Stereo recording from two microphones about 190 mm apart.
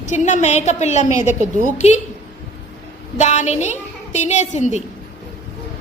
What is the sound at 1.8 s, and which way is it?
Speech, 35° left (ahead or behind).